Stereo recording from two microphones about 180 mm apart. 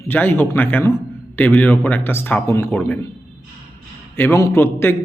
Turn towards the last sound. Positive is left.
turn(degrees=15)  # may be behind; listen again after turning